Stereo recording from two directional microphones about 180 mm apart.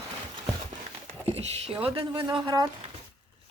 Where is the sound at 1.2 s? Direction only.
35° right (ahead or behind).